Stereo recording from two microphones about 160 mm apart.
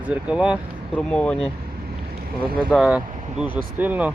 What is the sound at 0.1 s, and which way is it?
Speech, 5° right (ahead or behind).